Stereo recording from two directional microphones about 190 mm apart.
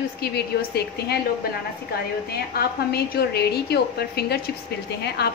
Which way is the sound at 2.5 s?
55° left (ahead or behind).